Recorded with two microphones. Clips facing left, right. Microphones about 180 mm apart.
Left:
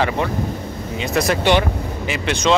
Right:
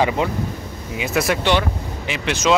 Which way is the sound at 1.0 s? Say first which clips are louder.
Left 1 dB; 5° right (ahead or behind).